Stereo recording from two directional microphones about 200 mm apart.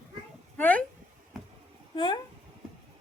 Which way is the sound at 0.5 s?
10° left (ahead or behind).